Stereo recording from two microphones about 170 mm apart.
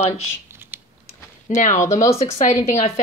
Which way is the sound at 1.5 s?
45° left (ahead or behind).